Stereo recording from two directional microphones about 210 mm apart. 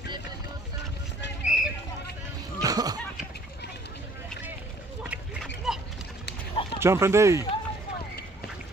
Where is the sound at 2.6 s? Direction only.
20° right (ahead or behind).